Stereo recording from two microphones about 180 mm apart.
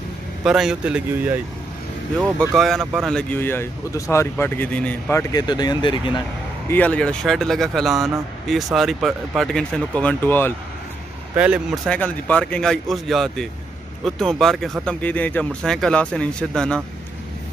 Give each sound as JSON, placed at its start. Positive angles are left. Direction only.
{"t": 0.4, "sound": "speech", "side_deg": -5}
{"t": 2.5, "sound": "speech", "side_deg": 0}
{"t": 6.7, "sound": "speech", "side_deg": 10}
{"t": 11.3, "sound": "speech", "side_deg": -5}
{"t": 11.8, "sound": "speech", "side_deg": 5}